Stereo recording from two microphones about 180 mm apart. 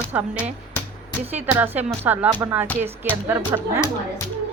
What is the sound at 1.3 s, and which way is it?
Speech, 10° right (ahead or behind).